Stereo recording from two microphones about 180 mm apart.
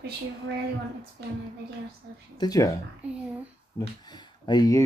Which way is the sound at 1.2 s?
70° right (ahead or behind).